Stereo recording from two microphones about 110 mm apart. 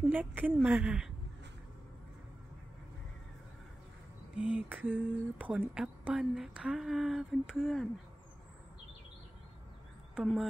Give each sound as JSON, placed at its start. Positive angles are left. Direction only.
{"t": 0.1, "sound": "speech", "side_deg": -15}
{"t": 4.4, "sound": "speech", "side_deg": -10}
{"t": 10.2, "sound": "speech", "side_deg": 0}